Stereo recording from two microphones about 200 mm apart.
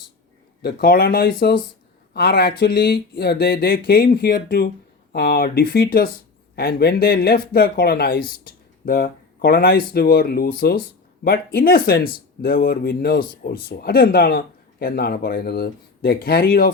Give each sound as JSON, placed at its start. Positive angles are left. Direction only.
{"t": 0.6, "sound": "speech", "side_deg": 50}
{"t": 8.4, "sound": "a sound", "side_deg": 50}
{"t": 9.9, "sound": "speech", "side_deg": 50}